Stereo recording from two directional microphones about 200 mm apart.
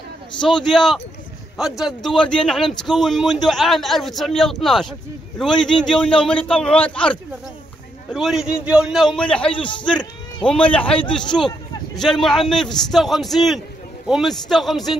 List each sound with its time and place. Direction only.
0.6 s speech: centre (ahead or behind)
11.4 s a sound: 20° left (ahead or behind)
12.0 s speech: centre (ahead or behind)